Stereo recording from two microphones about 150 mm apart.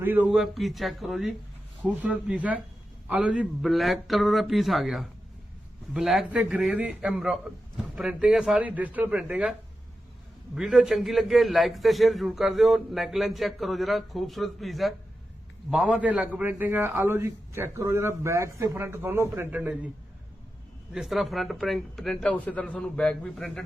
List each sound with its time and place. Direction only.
0.0 s a man's voice: 10° right (ahead or behind)
0.3 s a man's voice: centre (ahead or behind)
20.9 s a man's voice: centre (ahead or behind)